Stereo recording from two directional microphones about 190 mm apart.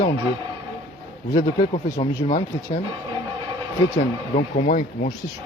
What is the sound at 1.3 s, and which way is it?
Speech, 35° left (ahead or behind).